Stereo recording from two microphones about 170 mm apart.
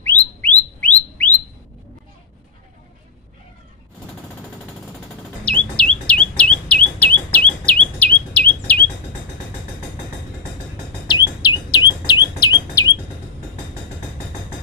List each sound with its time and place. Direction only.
0.0 s bird: 10° left (ahead or behind)
5.4 s bird: 5° left (ahead or behind)
11.1 s chirp: 25° left (ahead or behind)